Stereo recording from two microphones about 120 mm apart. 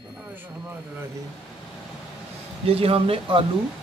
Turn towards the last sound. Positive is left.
turn(degrees=-50)  # may be behind; listen again after turning